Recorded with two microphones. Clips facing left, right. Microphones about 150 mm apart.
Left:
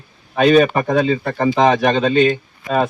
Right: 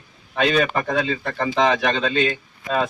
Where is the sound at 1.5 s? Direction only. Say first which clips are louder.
Left 4 dB; 45° left (ahead or behind).